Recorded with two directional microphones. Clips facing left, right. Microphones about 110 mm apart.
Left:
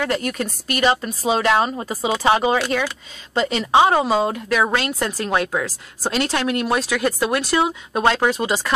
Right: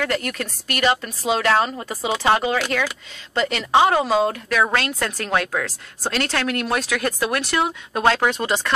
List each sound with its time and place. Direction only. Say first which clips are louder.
0.0 s speech: left 2 dB; 15° left (ahead or behind)
7.9 s speech: even; 5° left (ahead or behind)